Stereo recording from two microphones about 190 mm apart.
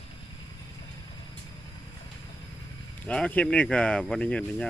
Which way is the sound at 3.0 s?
5° left (ahead or behind).